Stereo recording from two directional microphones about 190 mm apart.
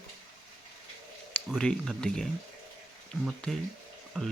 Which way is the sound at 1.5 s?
Centre (ahead or behind).